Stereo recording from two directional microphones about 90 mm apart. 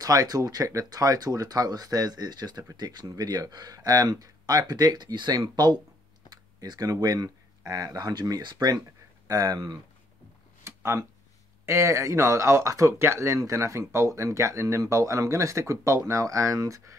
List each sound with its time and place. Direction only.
0.0 s speech: 40° right (ahead or behind)
10.6 s a sound: 30° right (ahead or behind)
11.6 s speech: 30° right (ahead or behind)